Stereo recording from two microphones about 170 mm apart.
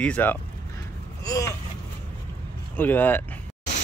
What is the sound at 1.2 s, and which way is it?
Gasp, 20° left (ahead or behind).